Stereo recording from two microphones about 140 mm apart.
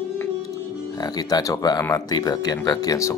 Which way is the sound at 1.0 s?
30° left (ahead or behind).